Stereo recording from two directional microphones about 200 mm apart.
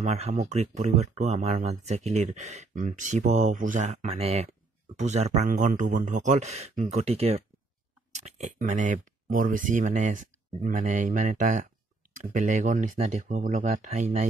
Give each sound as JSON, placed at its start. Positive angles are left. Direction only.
{"t": 0.0, "sound": "speech", "side_deg": -35}